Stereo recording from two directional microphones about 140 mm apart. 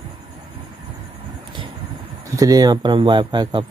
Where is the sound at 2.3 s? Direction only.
25° right (ahead or behind).